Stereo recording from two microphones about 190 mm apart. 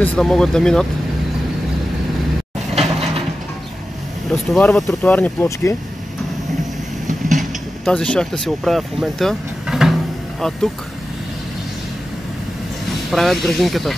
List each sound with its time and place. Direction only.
0.0 s speech: 5° left (ahead or behind)
2.7 s a sound: 30° right (ahead or behind)
4.3 s speech: centre (ahead or behind)
7.3 s speech: 5° left (ahead or behind)
13.1 s speech: centre (ahead or behind)